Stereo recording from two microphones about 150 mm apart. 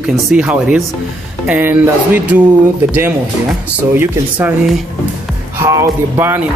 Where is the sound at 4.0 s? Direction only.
10° right (ahead or behind).